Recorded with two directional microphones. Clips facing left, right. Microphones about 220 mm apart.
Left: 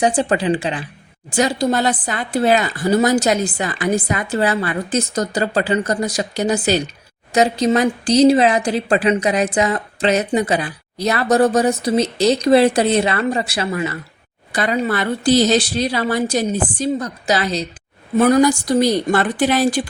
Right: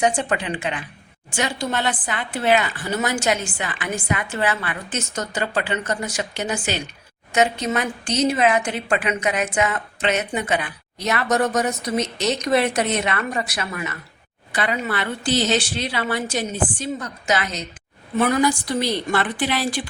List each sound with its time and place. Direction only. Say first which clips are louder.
0.0 s a woman's voice: left 5 dB; 35° left (ahead or behind)